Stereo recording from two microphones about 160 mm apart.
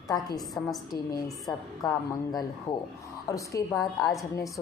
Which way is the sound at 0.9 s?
25° left (ahead or behind).